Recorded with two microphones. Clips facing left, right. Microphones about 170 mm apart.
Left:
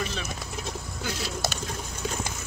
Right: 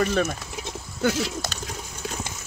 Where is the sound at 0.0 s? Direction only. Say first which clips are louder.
Right 10 dB; 55° right (ahead or behind).